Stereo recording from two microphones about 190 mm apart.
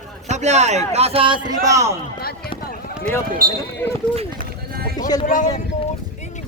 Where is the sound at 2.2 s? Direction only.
55° left (ahead or behind).